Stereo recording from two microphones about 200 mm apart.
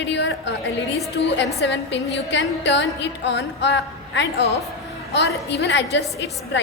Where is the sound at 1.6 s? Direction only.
60° left (ahead or behind).